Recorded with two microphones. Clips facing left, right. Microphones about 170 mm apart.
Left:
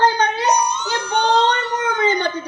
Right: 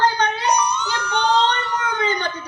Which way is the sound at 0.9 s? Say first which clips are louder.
Left 4 dB; 55° left (ahead or behind).